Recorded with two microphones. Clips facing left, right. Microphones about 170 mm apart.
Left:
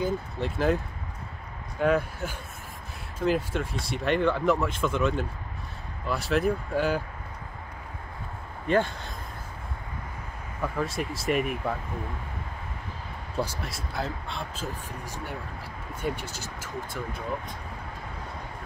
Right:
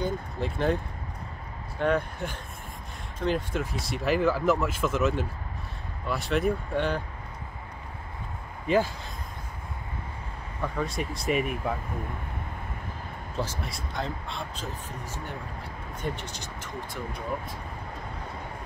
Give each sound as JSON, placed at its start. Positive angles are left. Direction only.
{"t": 0.0, "sound": "speech", "side_deg": 5}
{"t": 1.8, "sound": "speech", "side_deg": 5}
{"t": 8.6, "sound": "speech", "side_deg": -5}
{"t": 10.6, "sound": "speech", "side_deg": 0}
{"t": 13.6, "sound": "speech", "side_deg": 0}